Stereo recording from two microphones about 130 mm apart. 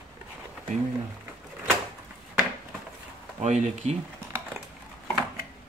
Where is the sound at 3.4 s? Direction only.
65° right (ahead or behind).